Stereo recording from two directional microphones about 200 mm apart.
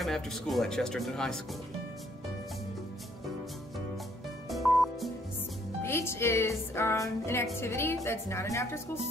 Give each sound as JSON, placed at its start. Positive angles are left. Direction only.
{"t": 0.0, "sound": "speech", "side_deg": 0}
{"t": 4.5, "sound": "music", "side_deg": 0}
{"t": 5.8, "sound": "music", "side_deg": 10}